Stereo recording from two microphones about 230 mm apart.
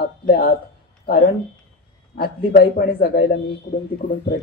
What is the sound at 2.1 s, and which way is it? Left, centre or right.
A man's voice, left.